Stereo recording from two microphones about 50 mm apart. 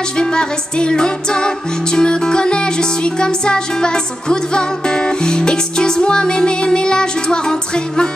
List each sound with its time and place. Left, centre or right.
0.2 s music: centre